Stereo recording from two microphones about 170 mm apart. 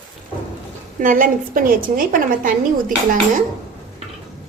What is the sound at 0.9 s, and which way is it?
A woman's voice, 50° right (ahead or behind).